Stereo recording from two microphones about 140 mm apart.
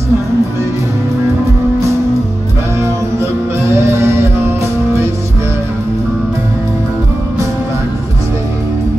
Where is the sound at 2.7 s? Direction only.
20° right (ahead or behind).